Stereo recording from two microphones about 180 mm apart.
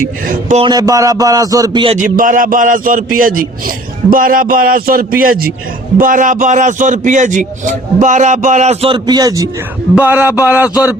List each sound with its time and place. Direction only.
0.0 s a man's voice: 45° right (ahead or behind)
0.6 s a man's voice: 20° right (ahead or behind)
2.0 s a man's voice: 45° right (ahead or behind); by 10.9 s 10° right (ahead or behind)